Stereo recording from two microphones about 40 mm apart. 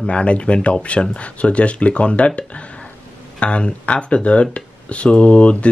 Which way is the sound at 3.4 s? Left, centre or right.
Left.